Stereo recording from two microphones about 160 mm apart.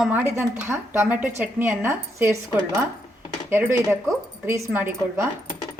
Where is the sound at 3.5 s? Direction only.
15° right (ahead or behind).